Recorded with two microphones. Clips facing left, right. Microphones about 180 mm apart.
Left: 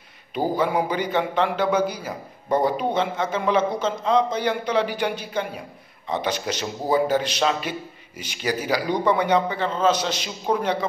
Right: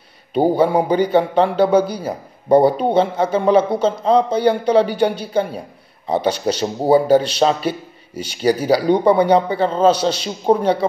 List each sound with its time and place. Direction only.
0.6 s a man's voice: 30° right (ahead or behind)